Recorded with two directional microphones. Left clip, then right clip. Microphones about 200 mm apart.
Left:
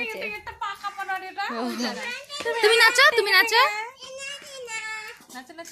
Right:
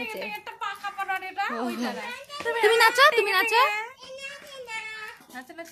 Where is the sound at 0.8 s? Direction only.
10° right (ahead or behind).